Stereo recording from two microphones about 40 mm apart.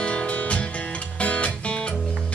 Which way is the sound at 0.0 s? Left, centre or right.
Left.